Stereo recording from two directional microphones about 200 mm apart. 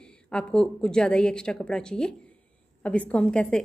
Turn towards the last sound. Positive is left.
turn(degrees=5)  # may be behind; listen again after turning